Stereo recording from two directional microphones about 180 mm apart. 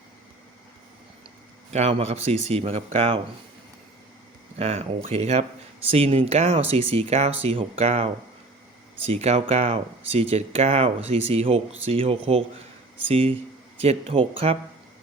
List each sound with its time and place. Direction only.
1.7 s speech: 40° right (ahead or behind)
4.5 s speech: 35° right (ahead or behind)